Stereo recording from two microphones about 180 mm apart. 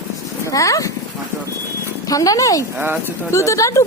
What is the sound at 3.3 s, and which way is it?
Speech, 15° left (ahead or behind).